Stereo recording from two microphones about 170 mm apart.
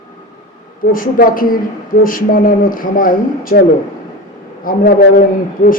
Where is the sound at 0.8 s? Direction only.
55° left (ahead or behind).